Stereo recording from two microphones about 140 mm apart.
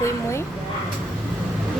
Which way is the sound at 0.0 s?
20° left (ahead or behind).